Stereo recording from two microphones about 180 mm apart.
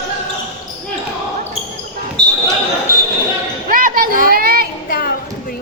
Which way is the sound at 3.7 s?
50° right (ahead or behind).